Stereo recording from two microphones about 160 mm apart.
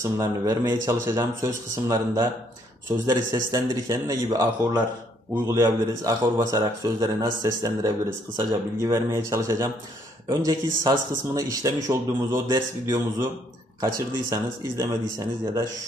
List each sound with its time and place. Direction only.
0.0 s a man's voice: 20° right (ahead or behind)
3.3 s a man's voice: 20° right (ahead or behind)